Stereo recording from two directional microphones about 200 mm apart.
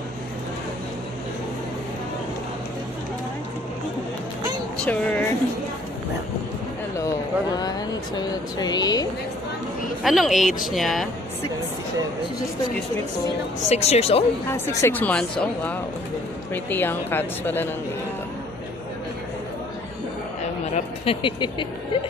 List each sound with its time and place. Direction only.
4.8 s a woman's voice: 5° left (ahead or behind)
7.0 s speech: 15° left (ahead or behind)
10.0 s speech: centre (ahead or behind)
13.7 s speech: 30° left (ahead or behind)
14.5 s speech: 15° left (ahead or behind)
20.7 s music: 30° left (ahead or behind)